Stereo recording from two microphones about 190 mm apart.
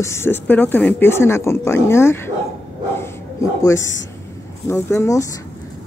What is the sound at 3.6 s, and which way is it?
Speech, 15° left (ahead or behind).